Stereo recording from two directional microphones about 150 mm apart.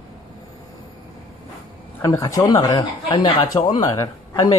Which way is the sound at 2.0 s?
20° left (ahead or behind).